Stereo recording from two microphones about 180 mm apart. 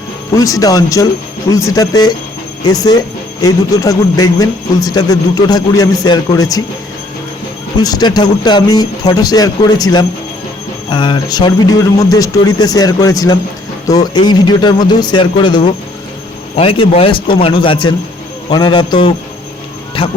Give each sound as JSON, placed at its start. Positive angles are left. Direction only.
{"t": 0.3, "sound": "speech", "side_deg": 20}
{"t": 7.8, "sound": "speech", "side_deg": 20}